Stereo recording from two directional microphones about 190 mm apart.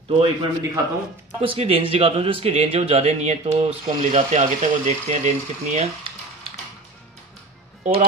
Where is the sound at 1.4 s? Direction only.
30° right (ahead or behind).